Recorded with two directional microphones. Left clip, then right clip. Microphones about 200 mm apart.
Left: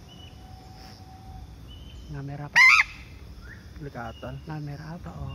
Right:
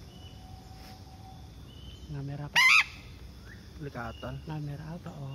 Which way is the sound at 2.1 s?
35° right (ahead or behind).